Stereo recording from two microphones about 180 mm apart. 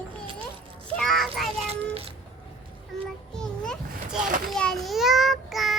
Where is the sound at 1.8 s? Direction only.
35° right (ahead or behind).